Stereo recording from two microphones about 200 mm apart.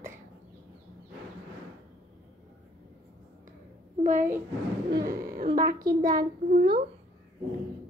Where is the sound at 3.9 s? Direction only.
40° right (ahead or behind).